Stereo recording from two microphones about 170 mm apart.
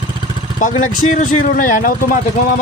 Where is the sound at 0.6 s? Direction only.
50° left (ahead or behind).